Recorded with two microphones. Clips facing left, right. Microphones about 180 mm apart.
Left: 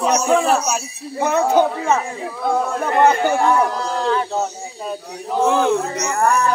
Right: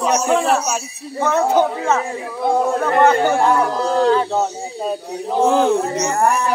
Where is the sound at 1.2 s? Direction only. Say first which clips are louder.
Even; 10° left (ahead or behind).